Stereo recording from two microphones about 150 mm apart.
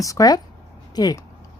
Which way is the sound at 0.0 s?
25° left (ahead or behind).